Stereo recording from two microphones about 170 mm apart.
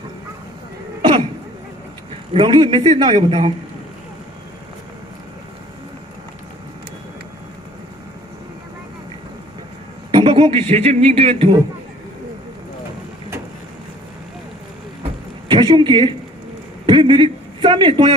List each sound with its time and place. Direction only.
2.3 s a man's voice: 30° right (ahead or behind)
10.1 s a man's voice: 30° right (ahead or behind)
15.4 s a man's voice: 30° right (ahead or behind)